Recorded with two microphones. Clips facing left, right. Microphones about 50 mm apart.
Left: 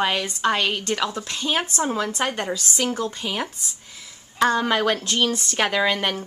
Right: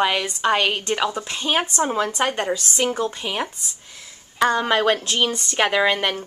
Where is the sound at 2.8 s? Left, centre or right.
Right.